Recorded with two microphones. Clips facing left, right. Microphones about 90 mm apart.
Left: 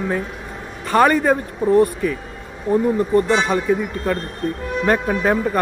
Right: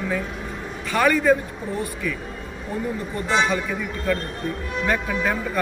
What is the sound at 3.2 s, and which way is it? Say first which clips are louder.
Speech: left 2 dB; 45° left (ahead or behind).